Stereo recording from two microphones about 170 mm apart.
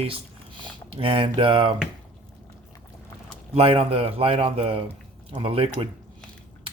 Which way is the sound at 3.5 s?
35° right (ahead or behind).